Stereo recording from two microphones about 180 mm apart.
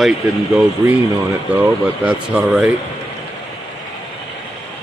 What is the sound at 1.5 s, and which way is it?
Speech, 10° right (ahead or behind).